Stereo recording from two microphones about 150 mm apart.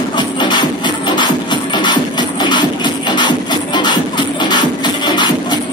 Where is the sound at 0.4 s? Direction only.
30° left (ahead or behind).